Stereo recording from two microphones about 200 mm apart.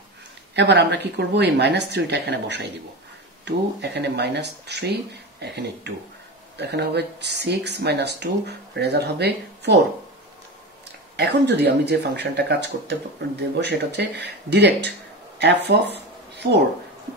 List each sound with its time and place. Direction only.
0.6 s speech: 55° right (ahead or behind)
11.1 s speech: 55° right (ahead or behind)